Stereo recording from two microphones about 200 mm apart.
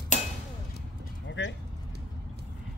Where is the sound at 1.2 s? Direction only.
65° left (ahead or behind).